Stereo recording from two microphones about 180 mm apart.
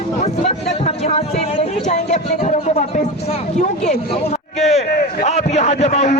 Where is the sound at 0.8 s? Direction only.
35° left (ahead or behind).